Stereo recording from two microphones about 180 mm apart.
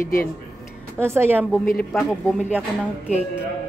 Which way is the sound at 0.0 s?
50° left (ahead or behind).